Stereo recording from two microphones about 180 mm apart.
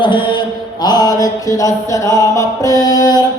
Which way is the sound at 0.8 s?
20° left (ahead or behind).